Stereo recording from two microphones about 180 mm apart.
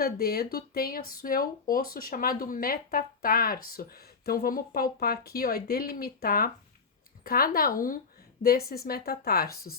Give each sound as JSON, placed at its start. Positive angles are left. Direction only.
{"t": 0.0, "sound": "speech", "side_deg": 60}